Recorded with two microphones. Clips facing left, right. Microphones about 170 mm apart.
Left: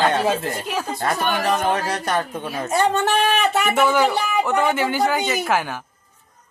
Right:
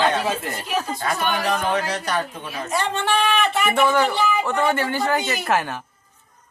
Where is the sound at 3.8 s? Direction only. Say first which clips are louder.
Even; 10° left (ahead or behind).